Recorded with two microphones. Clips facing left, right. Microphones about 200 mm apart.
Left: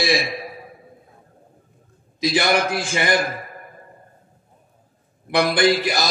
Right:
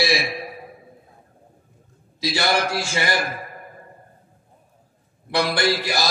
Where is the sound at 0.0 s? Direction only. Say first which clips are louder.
Left 1 dB; 50° left (ahead or behind).